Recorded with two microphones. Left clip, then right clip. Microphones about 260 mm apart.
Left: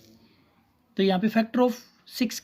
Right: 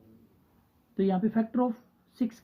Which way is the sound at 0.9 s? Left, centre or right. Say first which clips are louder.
Left 5 dB; left.